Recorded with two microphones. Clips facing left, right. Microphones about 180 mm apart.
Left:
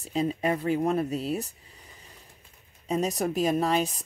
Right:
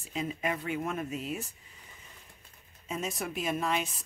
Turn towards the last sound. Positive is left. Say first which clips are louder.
# left 6 dB
turn(degrees=35)  # may be behind; listen again after turning